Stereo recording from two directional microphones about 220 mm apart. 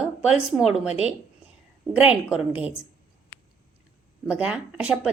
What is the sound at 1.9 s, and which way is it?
Speech, 5° right (ahead or behind).